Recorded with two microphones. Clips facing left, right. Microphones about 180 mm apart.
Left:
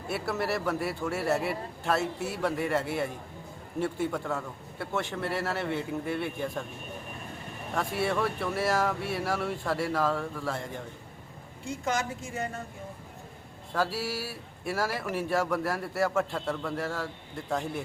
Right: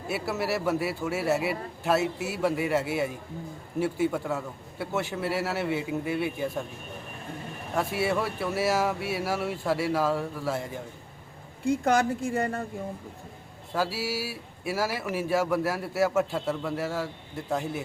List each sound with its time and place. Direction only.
0.1 s a man's voice: 5° right (ahead or behind)
7.8 s a man's voice: 5° right (ahead or behind)
11.6 s a woman's voice: 60° right (ahead or behind)
13.7 s a man's voice: 5° right (ahead or behind)